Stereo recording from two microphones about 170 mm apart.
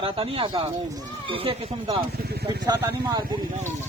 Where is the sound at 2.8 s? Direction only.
20° right (ahead or behind).